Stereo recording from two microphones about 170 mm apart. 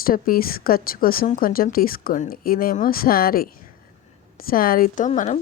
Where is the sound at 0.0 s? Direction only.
60° left (ahead or behind).